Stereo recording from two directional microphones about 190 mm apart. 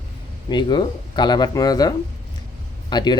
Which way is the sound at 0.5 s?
25° left (ahead or behind).